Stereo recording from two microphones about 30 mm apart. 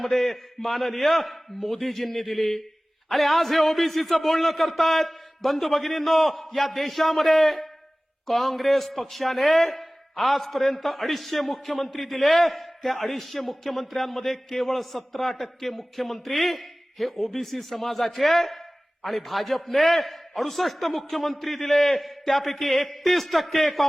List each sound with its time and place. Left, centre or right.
0.0 s a man's voice: centre